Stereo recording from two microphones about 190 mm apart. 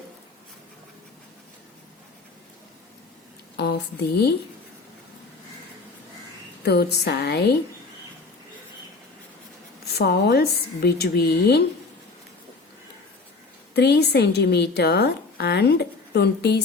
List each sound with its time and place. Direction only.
3.6 s a woman's voice: 60° left (ahead or behind)
6.6 s a woman's voice: 60° left (ahead or behind)
9.9 s a woman's voice: 60° left (ahead or behind)
13.7 s a woman's voice: 60° left (ahead or behind)